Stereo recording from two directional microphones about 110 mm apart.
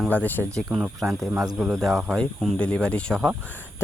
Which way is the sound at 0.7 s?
5° right (ahead or behind).